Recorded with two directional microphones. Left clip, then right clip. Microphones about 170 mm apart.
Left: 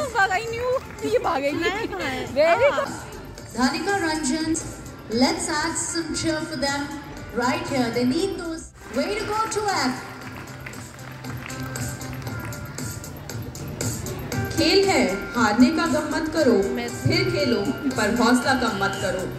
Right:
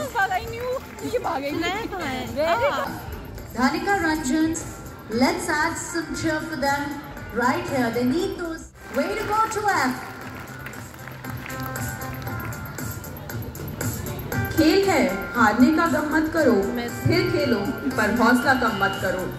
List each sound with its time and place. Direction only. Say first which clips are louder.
0.0 s a sound: left 2 dB; 90° left
1.6 s a woman's voice: left 1 dB; 10° left (ahead or behind)
3.5 s a woman's voice: right 1 dB; 50° left (ahead or behind)
9.5 s a woman's voice: right 2 dB; 50° left (ahead or behind)
14.3 s a woman's voice: even; 50° left (ahead or behind)